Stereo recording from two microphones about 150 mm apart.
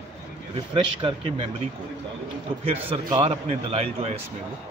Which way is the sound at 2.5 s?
35° right (ahead or behind).